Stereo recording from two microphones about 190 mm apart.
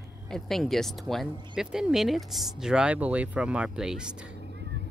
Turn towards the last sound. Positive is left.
turn(degrees=-5)  # may be behind; listen again after turning